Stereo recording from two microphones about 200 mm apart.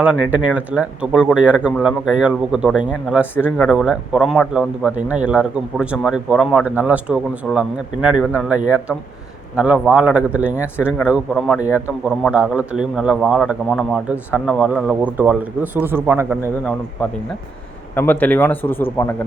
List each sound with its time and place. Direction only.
0.0 s a man's voice: 5° right (ahead or behind)
17.9 s speech: 10° left (ahead or behind)